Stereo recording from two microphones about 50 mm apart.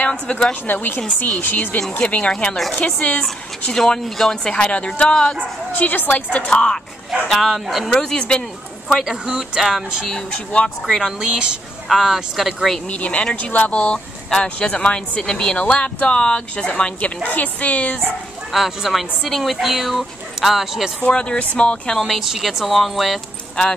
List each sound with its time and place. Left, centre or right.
0.0 s speech: left
0.7 s a woman's voice: left; by 4.4 s centre
4.5 s speech: left
5.8 s a woman's voice: left
6.5 s speech: centre
7.2 s speech: centre
7.9 s speech: centre
8.9 s speech: centre
11.1 s a woman's voice: centre
11.9 s speech: centre
12.8 s speech: left
18.5 s speech: centre
21.0 s speech: centre
21.9 s speech: centre